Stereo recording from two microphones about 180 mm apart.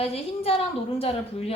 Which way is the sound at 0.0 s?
35° left (ahead or behind).